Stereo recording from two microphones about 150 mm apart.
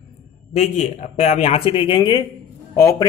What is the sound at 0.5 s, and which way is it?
Speech, 50° left (ahead or behind).